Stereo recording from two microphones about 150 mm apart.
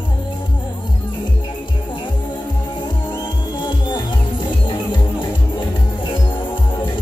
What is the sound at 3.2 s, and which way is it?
Music, 30° left (ahead or behind).